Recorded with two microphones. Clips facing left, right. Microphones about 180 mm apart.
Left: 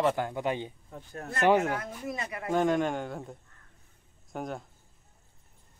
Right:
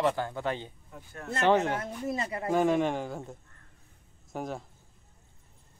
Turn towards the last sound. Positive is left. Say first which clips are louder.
# even
turn(degrees=0)  # may be behind; listen again after turning